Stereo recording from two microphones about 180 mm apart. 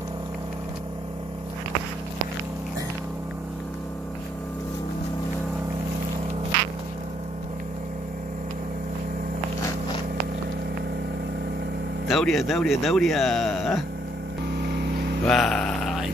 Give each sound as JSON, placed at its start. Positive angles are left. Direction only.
{"t": 12.1, "sound": "speech", "side_deg": 0}
{"t": 14.6, "sound": "vehicle", "side_deg": -60}
{"t": 15.2, "sound": "a sound", "side_deg": 0}